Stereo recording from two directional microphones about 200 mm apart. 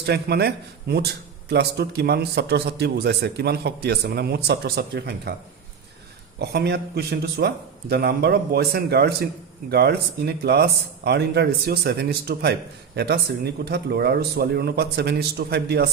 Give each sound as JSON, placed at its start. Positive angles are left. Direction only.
{"t": 0.0, "sound": "speech", "side_deg": -55}
{"t": 6.4, "sound": "speech", "side_deg": -55}